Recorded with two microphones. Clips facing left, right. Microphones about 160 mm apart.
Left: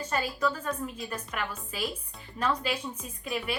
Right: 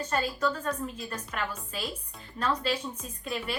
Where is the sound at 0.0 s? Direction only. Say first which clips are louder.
Right 1 dB; 10° left (ahead or behind).